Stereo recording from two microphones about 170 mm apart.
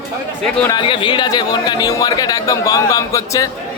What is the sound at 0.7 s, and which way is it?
Speech, 30° left (ahead or behind).